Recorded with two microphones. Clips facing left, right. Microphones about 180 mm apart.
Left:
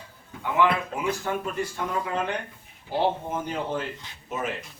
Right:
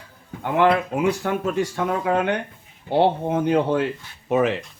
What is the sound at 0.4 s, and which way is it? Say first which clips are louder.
Speech: right 5 dB; 60° right (ahead or behind).